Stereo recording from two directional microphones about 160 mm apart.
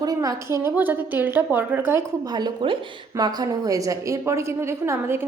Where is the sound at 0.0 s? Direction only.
25° right (ahead or behind).